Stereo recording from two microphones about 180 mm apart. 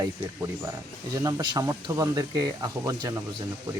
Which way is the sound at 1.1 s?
20° right (ahead or behind).